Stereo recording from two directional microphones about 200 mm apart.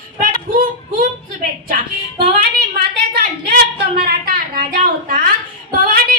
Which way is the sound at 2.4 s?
50° right (ahead or behind).